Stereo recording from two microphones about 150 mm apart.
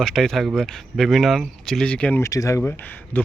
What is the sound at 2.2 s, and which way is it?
Speech, 20° left (ahead or behind).